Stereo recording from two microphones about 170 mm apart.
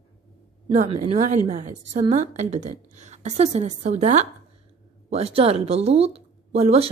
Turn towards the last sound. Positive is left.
turn(degrees=-40)  # may be behind; listen again after turning